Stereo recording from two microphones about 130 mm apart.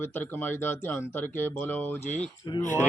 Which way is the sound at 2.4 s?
30° left (ahead or behind).